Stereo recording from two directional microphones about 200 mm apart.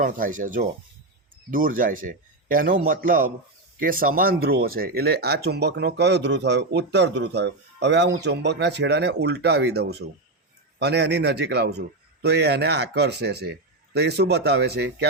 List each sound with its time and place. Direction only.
0.0 s a man's voice: 40° right (ahead or behind)